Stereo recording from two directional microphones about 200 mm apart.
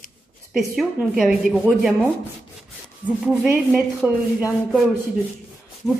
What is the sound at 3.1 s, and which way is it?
Speech, 5° right (ahead or behind).